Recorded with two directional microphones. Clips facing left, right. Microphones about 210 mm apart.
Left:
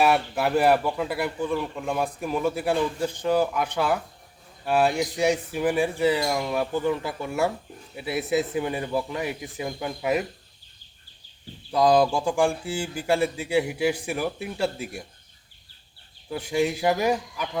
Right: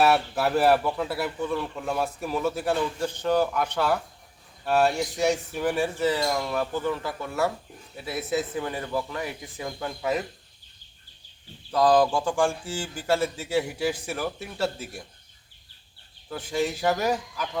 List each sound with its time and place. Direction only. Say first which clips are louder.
0.0 s speech: even; centre (ahead or behind)
2.4 s speech: left 2 dB; 10° left (ahead or behind)
11.7 s speech: left 1 dB; 10° left (ahead or behind)
16.3 s speech: left 3 dB; 10° left (ahead or behind)